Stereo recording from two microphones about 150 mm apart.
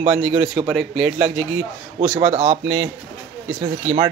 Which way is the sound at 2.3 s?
45° right (ahead or behind).